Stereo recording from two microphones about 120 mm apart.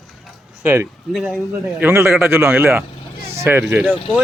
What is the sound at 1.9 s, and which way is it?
Speech, 20° right (ahead or behind).